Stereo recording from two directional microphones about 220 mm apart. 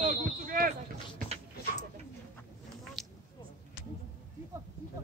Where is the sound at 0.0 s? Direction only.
40° right (ahead or behind).